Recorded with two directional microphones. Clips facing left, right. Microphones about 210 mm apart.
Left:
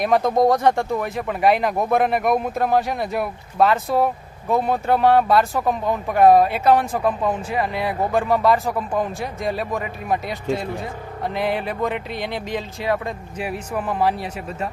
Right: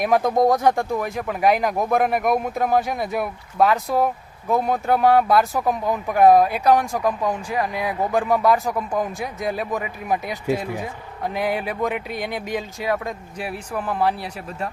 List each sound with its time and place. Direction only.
0.0 s speech: centre (ahead or behind)